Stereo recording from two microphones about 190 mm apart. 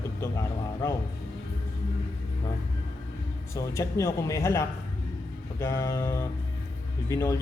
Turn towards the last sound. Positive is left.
turn(degrees=15)  # may be behind; listen again after turning